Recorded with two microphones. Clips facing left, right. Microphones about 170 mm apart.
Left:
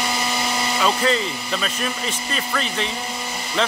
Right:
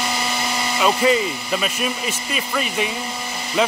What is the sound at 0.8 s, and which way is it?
Speech, 10° right (ahead or behind).